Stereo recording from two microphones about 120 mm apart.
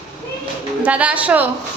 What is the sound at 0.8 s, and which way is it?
Speech, 10° right (ahead or behind).